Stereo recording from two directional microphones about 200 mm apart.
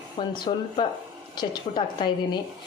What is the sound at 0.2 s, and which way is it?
A woman's voice, 20° left (ahead or behind).